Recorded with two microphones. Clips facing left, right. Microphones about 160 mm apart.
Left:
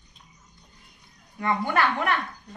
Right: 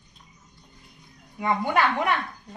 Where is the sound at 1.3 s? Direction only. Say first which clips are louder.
Right 1 dB; 15° right (ahead or behind).